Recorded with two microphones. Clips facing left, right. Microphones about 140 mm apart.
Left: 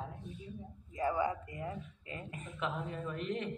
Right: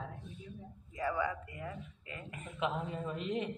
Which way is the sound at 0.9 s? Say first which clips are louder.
Left 2 dB; 35° left (ahead or behind).